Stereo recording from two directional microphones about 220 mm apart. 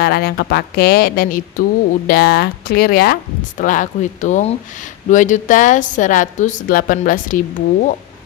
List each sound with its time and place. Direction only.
0.0 s a woman's voice: 45° left (ahead or behind)